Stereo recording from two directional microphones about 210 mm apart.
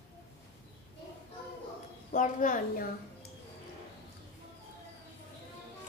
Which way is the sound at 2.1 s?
40° left (ahead or behind).